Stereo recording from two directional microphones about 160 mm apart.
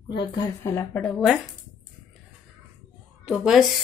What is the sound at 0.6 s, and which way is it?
Speech, 15° left (ahead or behind).